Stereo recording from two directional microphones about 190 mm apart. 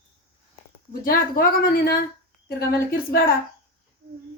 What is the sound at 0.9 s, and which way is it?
A woman's voice, 50° left (ahead or behind).